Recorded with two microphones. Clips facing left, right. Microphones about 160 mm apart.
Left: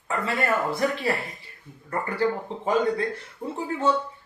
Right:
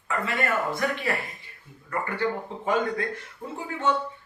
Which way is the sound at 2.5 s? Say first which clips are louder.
Left 3 dB; 30° left (ahead or behind).